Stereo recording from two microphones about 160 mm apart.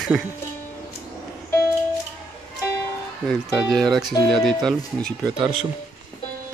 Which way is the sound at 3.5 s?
Centre (ahead or behind).